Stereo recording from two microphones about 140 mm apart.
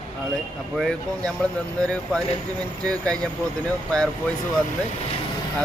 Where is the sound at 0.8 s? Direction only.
5° left (ahead or behind).